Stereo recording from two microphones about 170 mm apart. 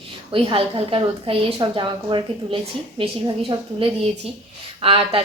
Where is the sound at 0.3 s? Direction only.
30° right (ahead or behind).